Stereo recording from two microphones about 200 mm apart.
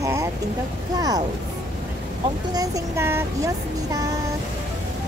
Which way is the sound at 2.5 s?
15° right (ahead or behind).